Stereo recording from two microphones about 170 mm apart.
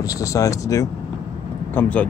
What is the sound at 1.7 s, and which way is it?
Speech, 10° left (ahead or behind).